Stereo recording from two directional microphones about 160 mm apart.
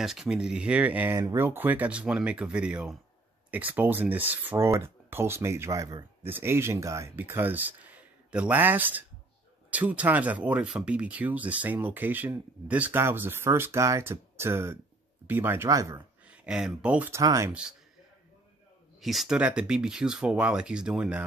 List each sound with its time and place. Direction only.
0.0 s speech: centre (ahead or behind); by 16.0 s 20° right (ahead or behind)
16.3 s speech: 5° right (ahead or behind)
17.2 s speech: 20° right (ahead or behind)
17.5 s speech: 5° right (ahead or behind)
18.9 s speech: centre (ahead or behind)